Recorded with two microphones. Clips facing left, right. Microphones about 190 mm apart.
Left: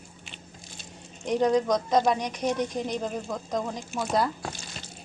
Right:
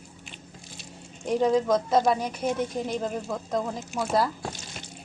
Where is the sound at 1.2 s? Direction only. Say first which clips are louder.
Even; 5° right (ahead or behind).